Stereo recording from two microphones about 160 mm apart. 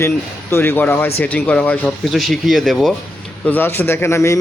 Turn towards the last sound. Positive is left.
turn(degrees=15)  # may be behind; listen again after turning